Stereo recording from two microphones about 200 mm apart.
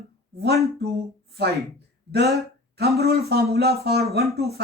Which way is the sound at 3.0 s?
50° right (ahead or behind).